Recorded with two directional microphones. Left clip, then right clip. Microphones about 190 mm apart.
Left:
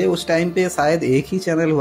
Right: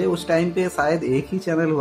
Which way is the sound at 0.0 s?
25° left (ahead or behind).